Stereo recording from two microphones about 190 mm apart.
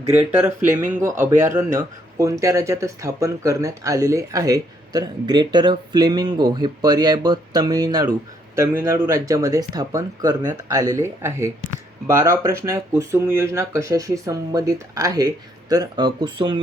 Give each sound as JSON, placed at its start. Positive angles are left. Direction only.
{"t": 0.2, "sound": "speech", "side_deg": -10}